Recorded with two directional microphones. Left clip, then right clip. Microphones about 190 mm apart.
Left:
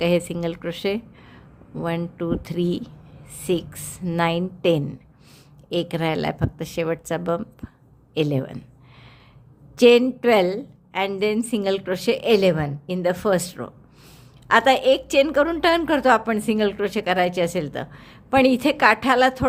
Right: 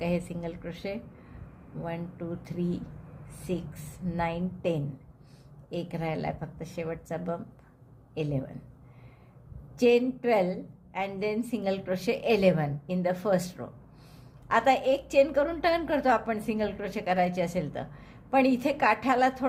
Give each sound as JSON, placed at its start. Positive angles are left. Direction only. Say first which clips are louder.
{"t": 0.0, "sound": "a woman's voice", "louder": "left 11 dB", "side_deg": 40}
{"t": 9.7, "sound": "a woman's voice", "louder": "left 9 dB", "side_deg": 40}